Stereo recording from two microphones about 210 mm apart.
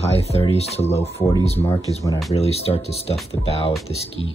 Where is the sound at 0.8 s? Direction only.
10° left (ahead or behind).